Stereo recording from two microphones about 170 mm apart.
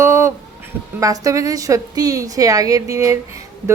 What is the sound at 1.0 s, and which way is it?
A woman's voice, 20° right (ahead or behind).